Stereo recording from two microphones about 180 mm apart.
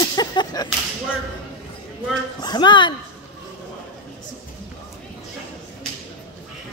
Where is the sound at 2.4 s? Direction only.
25° left (ahead or behind).